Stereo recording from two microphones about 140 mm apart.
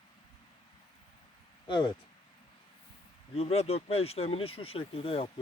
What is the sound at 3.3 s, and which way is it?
Speech, 45° left (ahead or behind).